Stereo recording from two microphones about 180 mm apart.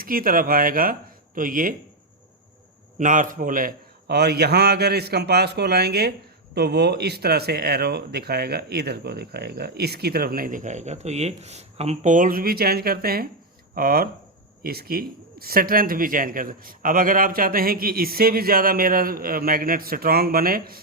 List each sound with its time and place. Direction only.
0.0 s speech: 50° right (ahead or behind)
3.0 s a man's voice: 45° right (ahead or behind)